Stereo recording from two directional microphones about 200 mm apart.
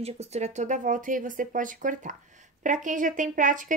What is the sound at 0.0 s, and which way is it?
Speech, 30° right (ahead or behind).